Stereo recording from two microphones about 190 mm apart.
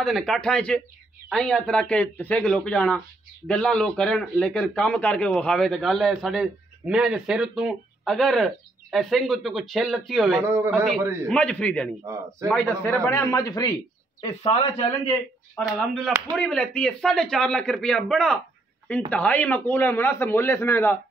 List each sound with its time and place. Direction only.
0.0 s a man's voice: centre (ahead or behind)
10.6 s a man's voice: 10° right (ahead or behind)
11.2 s a man's voice: 5° left (ahead or behind)
14.2 s a man's voice: 30° left (ahead or behind)
15.5 s a man's voice: 5° right (ahead or behind)